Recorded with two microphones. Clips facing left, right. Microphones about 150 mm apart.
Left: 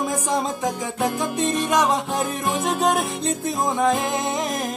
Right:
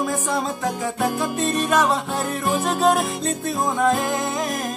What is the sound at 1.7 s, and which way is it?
Music, 20° left (ahead or behind).